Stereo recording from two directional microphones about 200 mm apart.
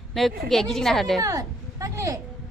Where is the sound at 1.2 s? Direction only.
15° right (ahead or behind).